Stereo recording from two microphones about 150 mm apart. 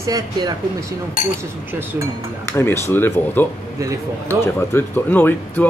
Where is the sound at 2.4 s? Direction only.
15° left (ahead or behind).